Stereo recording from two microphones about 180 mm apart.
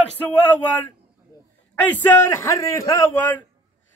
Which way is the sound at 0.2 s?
10° left (ahead or behind).